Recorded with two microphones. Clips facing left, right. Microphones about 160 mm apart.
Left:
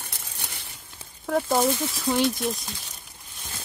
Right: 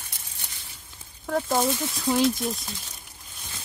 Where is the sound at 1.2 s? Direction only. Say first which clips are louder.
Left 2 dB; 5° left (ahead or behind).